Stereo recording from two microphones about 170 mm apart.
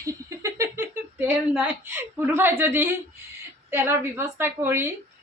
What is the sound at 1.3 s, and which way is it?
A woman's voice, 10° right (ahead or behind).